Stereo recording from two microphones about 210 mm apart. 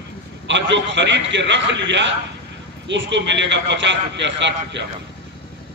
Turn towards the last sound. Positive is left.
turn(degrees=-55)  # may be behind; listen again after turning